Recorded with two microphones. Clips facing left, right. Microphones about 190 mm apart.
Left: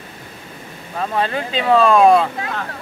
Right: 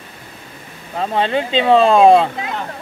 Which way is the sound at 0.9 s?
25° right (ahead or behind).